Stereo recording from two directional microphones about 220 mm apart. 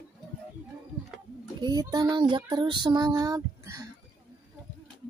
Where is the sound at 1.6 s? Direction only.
20° right (ahead or behind).